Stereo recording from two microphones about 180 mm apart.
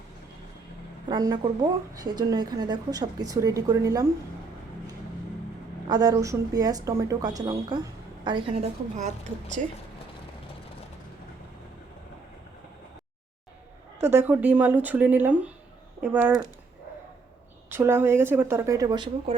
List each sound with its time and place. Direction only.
1.0 s speech: 20° right (ahead or behind)
5.9 s speech: 20° right (ahead or behind)
9.6 s speech: 45° right (ahead or behind)
14.0 s speech: 15° right (ahead or behind)
17.7 s speech: 10° right (ahead or behind)